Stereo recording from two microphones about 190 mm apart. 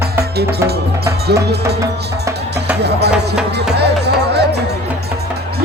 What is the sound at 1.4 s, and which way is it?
Music, 60° right (ahead or behind).